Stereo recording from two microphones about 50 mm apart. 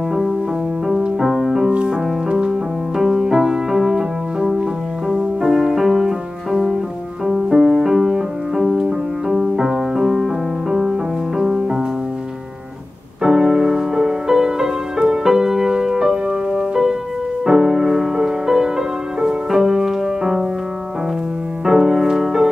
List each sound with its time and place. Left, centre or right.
1.0 s music: centre
3.0 s music: centre
13.2 s music: centre
21.6 s music: centre